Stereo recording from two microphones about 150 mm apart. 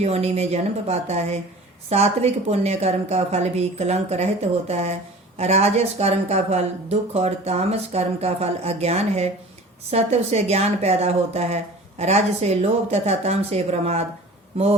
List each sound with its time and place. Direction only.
0.0 s a woman's voice: 45° right (ahead or behind)